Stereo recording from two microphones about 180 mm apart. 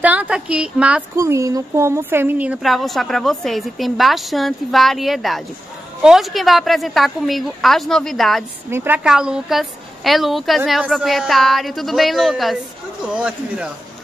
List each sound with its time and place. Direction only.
0.0 s a woman's voice: 10° right (ahead or behind)
1.2 s a woman's voice: 15° right (ahead or behind); by 8.5 s centre (ahead or behind)
8.6 s a woman's voice: 10° right (ahead or behind)